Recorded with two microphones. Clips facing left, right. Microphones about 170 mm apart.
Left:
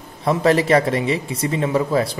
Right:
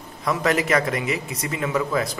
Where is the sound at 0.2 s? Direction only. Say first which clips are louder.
Left 5 dB; 30° left (ahead or behind).